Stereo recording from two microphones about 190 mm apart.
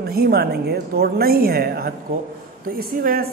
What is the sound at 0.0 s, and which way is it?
A woman's voice, 55° right (ahead or behind).